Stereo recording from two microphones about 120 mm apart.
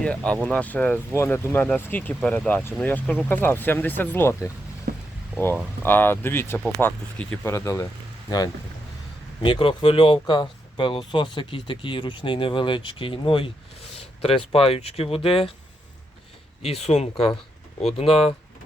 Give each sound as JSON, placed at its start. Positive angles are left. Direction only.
{"t": 0.0, "sound": "speech", "side_deg": 10}
{"t": 5.8, "sound": "speech", "side_deg": 15}
{"t": 6.6, "sound": "speech", "side_deg": 5}
{"t": 7.4, "sound": "speech", "side_deg": 25}
{"t": 9.4, "sound": "speech", "side_deg": 45}
{"t": 16.6, "sound": "speech", "side_deg": 60}